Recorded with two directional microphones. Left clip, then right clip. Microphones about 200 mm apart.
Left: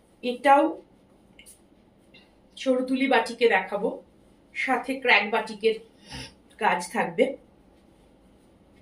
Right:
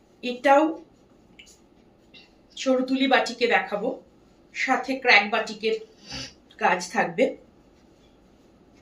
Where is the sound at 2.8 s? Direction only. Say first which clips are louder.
Right 2 dB; 15° right (ahead or behind).